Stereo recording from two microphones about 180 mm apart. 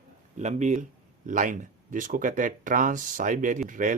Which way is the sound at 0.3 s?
40° right (ahead or behind).